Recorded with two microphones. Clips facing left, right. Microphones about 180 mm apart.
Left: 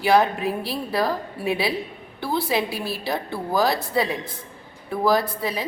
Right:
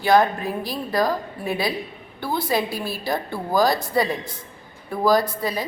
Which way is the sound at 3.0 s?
Centre (ahead or behind).